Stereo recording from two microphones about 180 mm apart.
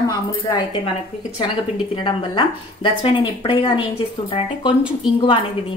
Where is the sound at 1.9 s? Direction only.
25° left (ahead or behind).